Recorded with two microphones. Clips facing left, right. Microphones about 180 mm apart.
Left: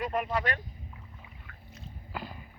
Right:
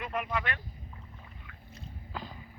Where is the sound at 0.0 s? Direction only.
40° left (ahead or behind).